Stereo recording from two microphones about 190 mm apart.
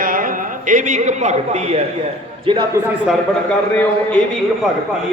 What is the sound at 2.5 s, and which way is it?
Speech, 25° right (ahead or behind).